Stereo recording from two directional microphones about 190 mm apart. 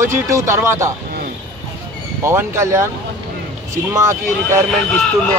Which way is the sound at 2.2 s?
15° right (ahead or behind).